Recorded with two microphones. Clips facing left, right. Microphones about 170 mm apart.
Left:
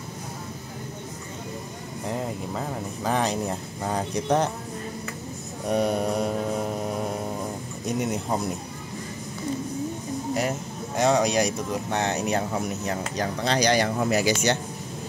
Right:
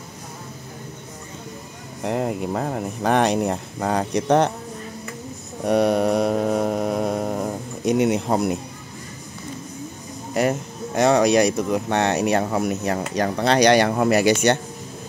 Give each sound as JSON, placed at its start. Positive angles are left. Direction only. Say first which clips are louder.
{"t": 2.0, "sound": "speech", "louder": "right 7 dB", "side_deg": -65}
{"t": 5.7, "sound": "mantra", "louder": "right 6 dB", "side_deg": -75}
{"t": 7.8, "sound": "speech", "louder": "right 8 dB", "side_deg": -80}
{"t": 11.0, "sound": "speech", "louder": "right 5 dB", "side_deg": -65}